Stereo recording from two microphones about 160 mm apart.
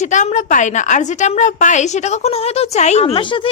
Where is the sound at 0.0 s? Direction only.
50° left (ahead or behind).